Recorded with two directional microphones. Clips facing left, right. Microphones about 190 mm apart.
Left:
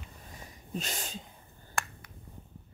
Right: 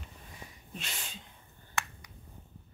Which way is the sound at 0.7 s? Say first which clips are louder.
Left 8 dB; 40° left (ahead or behind).